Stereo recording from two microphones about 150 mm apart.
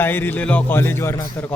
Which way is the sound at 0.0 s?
15° left (ahead or behind).